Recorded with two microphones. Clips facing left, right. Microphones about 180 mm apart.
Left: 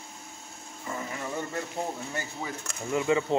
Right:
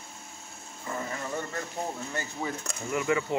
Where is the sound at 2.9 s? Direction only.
20° left (ahead or behind).